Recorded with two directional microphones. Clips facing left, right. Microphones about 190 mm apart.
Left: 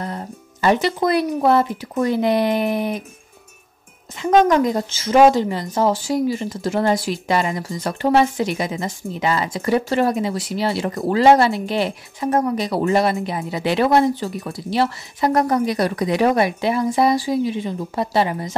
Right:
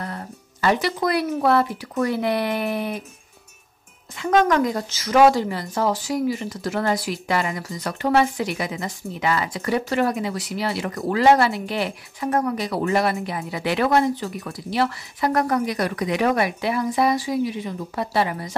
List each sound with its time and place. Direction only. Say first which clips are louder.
0.0 s speech: left 4 dB; 20° left (ahead or behind)
4.2 s speech: left 3 dB; 20° left (ahead or behind)